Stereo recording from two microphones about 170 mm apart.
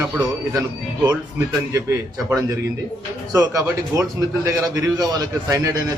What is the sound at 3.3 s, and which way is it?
A man's voice, 20° right (ahead or behind).